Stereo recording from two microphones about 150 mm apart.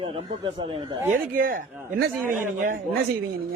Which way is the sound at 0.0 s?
35° right (ahead or behind).